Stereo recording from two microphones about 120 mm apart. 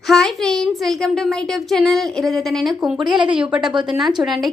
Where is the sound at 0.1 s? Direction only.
5° left (ahead or behind).